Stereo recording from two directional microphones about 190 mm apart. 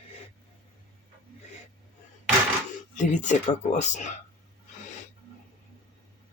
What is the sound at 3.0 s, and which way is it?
Speech, 40° left (ahead or behind).